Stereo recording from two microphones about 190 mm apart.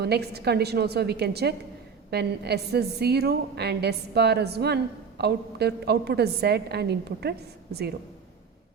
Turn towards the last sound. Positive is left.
turn(degrees=-60)  # may be behind; listen again after turning